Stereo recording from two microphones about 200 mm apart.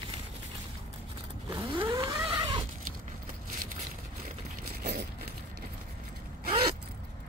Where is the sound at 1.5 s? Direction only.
20° right (ahead or behind).